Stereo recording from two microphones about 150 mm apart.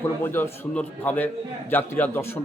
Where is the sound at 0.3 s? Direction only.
15° left (ahead or behind).